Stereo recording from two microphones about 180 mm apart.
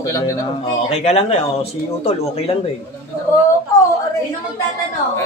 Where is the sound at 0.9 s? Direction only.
35° left (ahead or behind).